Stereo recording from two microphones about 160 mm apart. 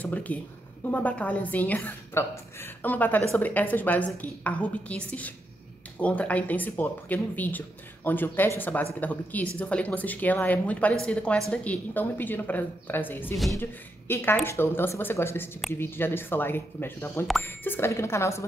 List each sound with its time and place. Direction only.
0.0 s speech: 10° left (ahead or behind)